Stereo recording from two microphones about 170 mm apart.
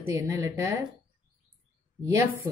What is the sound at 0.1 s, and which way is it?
Speech, 20° right (ahead or behind).